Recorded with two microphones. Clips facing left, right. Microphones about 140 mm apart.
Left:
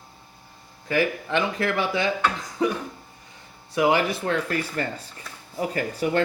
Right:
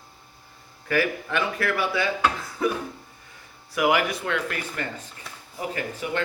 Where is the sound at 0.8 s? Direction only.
20° left (ahead or behind); by 6.2 s 40° left (ahead or behind).